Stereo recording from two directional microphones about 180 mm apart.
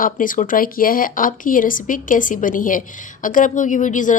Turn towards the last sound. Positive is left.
turn(degrees=45)  # may be behind; listen again after turning